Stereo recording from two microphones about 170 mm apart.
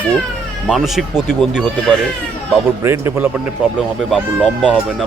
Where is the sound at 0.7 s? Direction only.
Centre (ahead or behind).